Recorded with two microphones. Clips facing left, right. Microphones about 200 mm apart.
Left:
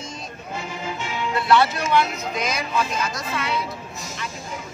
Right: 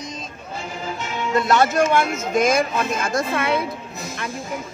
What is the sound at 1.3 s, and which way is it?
Speech, 45° right (ahead or behind).